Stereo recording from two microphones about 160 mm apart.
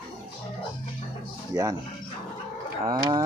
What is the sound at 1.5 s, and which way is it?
Livestock, 25° right (ahead or behind).